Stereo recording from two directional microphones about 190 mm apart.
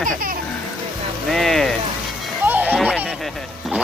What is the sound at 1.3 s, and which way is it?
Speech, centre (ahead or behind).